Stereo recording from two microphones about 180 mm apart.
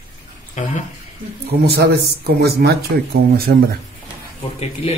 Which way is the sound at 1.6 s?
65° right (ahead or behind).